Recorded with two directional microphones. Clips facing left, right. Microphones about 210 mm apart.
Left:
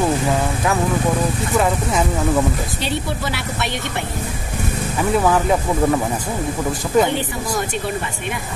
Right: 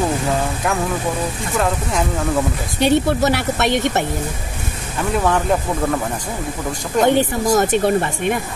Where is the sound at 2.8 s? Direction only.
50° right (ahead or behind).